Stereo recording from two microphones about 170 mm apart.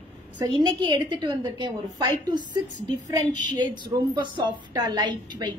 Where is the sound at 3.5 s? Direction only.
25° right (ahead or behind).